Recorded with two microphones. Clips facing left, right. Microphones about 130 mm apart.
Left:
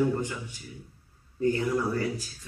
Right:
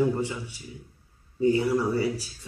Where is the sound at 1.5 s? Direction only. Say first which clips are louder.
Right 3 dB; 10° right (ahead or behind).